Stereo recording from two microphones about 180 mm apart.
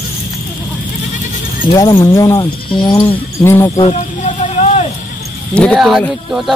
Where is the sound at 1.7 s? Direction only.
20° left (ahead or behind).